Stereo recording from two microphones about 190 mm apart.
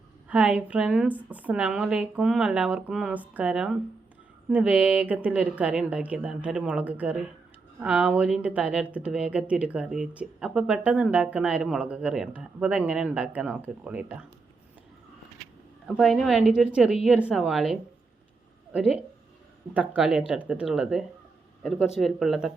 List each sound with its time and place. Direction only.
0.3 s speech: 5° right (ahead or behind)
16.0 s a woman's voice: centre (ahead or behind)
20.0 s speech: 5° right (ahead or behind)